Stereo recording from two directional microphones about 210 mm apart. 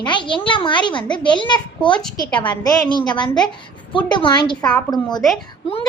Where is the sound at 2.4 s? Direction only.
20° left (ahead or behind).